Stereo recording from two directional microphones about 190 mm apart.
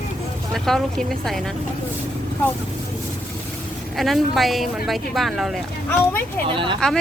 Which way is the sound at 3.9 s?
Centre (ahead or behind).